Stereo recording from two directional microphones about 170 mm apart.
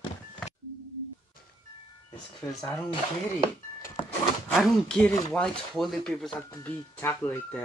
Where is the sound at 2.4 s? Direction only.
25° left (ahead or behind).